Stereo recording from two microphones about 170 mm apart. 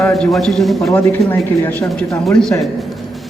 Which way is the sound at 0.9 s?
15° left (ahead or behind).